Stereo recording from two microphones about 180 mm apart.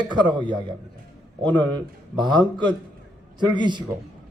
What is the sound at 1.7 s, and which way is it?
A man's voice, 25° right (ahead or behind).